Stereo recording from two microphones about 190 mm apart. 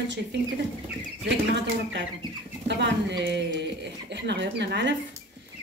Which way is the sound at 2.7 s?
65° right (ahead or behind).